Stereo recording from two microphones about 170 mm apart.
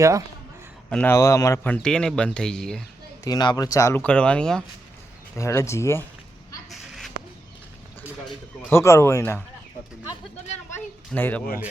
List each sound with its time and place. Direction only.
0.9 s speech: 10° left (ahead or behind)
3.2 s speech: 25° left (ahead or behind)
4.0 s speech: 5° left (ahead or behind)
5.4 s speech: 15° left (ahead or behind)
6.7 s a sound: centre (ahead or behind)
8.7 s speech: 15° left (ahead or behind)
10.7 s a child's voice: 10° left (ahead or behind)